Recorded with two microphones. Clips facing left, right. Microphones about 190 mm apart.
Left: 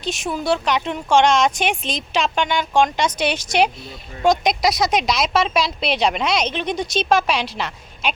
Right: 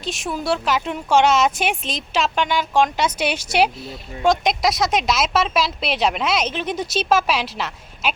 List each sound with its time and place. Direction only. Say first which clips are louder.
0.0 s speech: left 2 dB; centre (ahead or behind)